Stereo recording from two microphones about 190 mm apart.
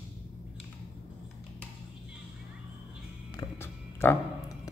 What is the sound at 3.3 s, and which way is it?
Music, 10° left (ahead or behind).